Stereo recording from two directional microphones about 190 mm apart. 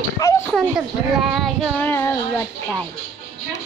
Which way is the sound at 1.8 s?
15° left (ahead or behind).